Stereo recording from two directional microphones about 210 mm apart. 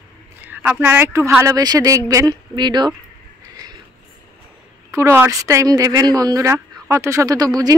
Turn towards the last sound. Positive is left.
turn(degrees=-15)  # may be behind; listen again after turning